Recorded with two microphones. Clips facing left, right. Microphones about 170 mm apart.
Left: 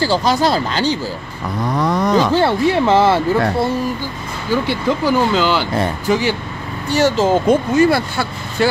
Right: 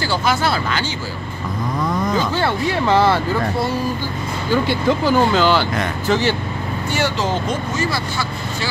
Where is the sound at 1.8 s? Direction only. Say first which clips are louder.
Left 5 dB; 75° left (ahead or behind).